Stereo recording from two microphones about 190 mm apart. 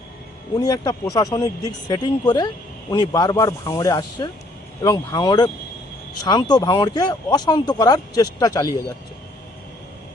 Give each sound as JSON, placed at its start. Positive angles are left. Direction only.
{"t": 0.6, "sound": "speech", "side_deg": 20}